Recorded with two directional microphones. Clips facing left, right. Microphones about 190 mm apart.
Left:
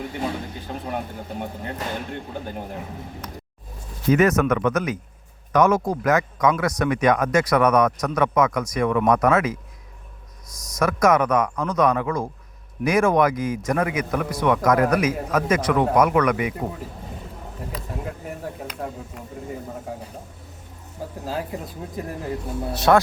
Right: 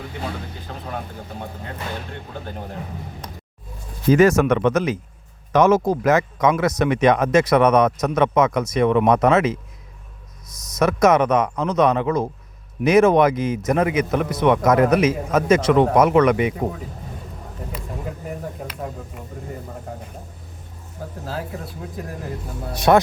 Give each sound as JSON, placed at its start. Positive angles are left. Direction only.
{"t": 0.7, "sound": "speech", "side_deg": 15}
{"t": 4.1, "sound": "speech", "side_deg": -30}
{"t": 10.8, "sound": "speech", "side_deg": -25}
{"t": 17.7, "sound": "a man's voice", "side_deg": 0}
{"t": 21.2, "sound": "speech", "side_deg": 15}
{"t": 22.7, "sound": "speech", "side_deg": -15}